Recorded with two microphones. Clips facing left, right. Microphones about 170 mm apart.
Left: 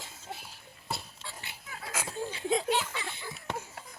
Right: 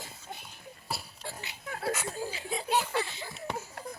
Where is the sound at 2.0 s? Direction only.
90° left.